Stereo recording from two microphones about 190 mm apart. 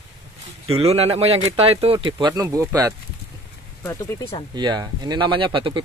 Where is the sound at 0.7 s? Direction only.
30° right (ahead or behind).